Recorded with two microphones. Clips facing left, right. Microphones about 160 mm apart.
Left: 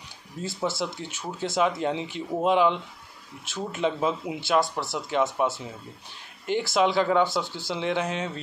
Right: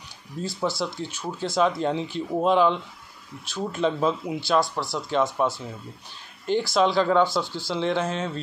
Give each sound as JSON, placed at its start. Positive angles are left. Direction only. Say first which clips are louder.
{"t": 0.4, "sound": "speech", "louder": "right 2 dB", "side_deg": 25}